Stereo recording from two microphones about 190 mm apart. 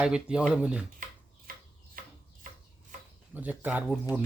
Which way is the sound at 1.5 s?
50° right (ahead or behind).